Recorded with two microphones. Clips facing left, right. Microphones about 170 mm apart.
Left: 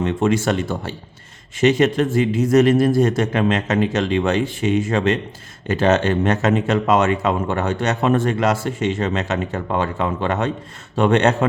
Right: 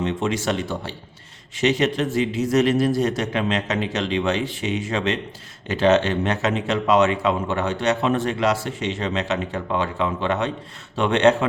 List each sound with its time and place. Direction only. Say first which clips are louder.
0.0 s speech: left 5 dB; 50° left (ahead or behind)